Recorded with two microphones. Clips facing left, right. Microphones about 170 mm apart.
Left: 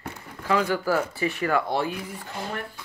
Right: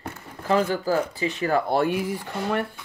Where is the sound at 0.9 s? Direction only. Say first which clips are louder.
Right 1 dB; 20° right (ahead or behind).